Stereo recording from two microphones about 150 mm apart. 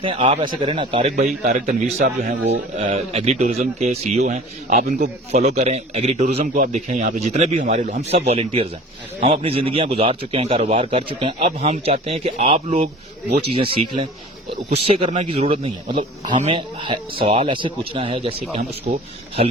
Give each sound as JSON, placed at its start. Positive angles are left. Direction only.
{"t": 0.0, "sound": "a man's voice", "side_deg": -35}
{"t": 1.5, "sound": "a man's voice", "side_deg": -55}
{"t": 2.9, "sound": "a man's voice", "side_deg": -45}
{"t": 13.5, "sound": "a man's voice", "side_deg": -35}